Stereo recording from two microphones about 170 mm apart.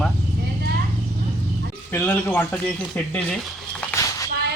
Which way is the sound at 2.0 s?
10° left (ahead or behind).